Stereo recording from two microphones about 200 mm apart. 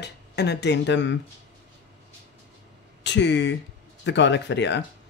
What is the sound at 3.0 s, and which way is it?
Speech, 60° left (ahead or behind).